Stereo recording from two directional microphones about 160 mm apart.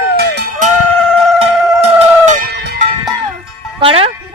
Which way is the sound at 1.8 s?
45° right (ahead or behind).